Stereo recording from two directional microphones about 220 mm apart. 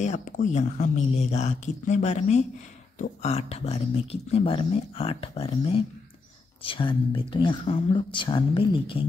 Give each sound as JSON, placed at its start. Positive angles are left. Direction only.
{"t": 0.0, "sound": "speech", "side_deg": 35}